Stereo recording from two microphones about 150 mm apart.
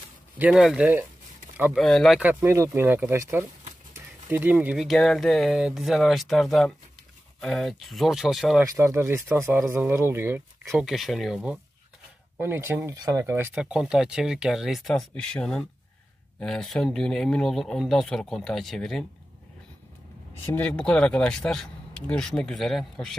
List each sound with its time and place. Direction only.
0.4 s speech: 5° right (ahead or behind)
2.1 s speech: 15° right (ahead or behind)
8.6 s speech: 20° right (ahead or behind)
10.8 s speech: centre (ahead or behind)
12.4 s speech: 15° right (ahead or behind); by 19.0 s centre (ahead or behind)
20.5 s speech: 5° left (ahead or behind)